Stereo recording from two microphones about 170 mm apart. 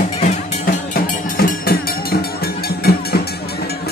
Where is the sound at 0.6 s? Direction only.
55° left (ahead or behind).